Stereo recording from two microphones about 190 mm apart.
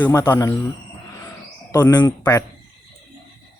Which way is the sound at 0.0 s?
10° left (ahead or behind).